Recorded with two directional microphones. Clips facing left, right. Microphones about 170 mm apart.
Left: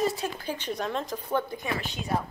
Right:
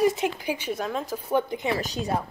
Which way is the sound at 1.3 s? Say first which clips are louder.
Right 5 dB; 20° right (ahead or behind).